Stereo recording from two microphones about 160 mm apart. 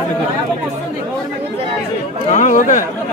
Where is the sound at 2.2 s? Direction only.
50° left (ahead or behind).